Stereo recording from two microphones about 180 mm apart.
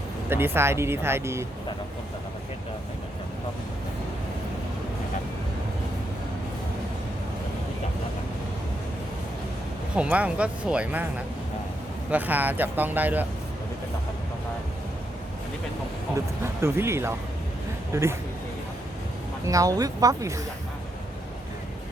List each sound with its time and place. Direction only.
0.3 s speech: 15° right (ahead or behind)
9.9 s speech: 5° right (ahead or behind)
12.1 s speech: 10° right (ahead or behind)
16.6 s speech: 15° right (ahead or behind)
19.5 s speech: 20° right (ahead or behind)